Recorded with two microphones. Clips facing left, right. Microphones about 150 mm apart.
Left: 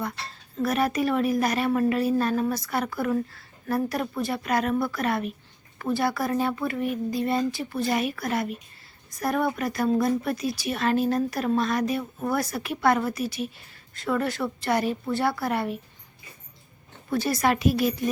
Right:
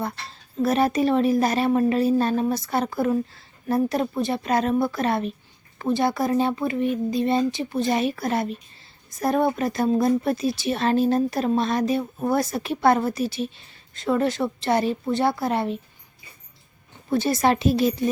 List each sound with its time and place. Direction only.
0.5 s speech: 25° right (ahead or behind)
17.1 s speech: 25° right (ahead or behind)